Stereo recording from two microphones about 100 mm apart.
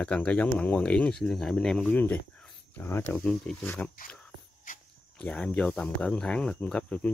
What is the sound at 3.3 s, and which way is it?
Speech, 10° left (ahead or behind).